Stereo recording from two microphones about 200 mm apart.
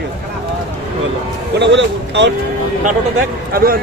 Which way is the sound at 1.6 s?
60° right (ahead or behind).